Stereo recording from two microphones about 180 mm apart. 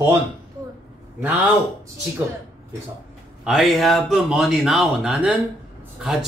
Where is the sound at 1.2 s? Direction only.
10° right (ahead or behind).